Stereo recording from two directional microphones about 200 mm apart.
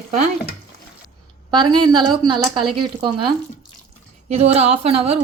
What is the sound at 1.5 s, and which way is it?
A woman's voice, 20° right (ahead or behind).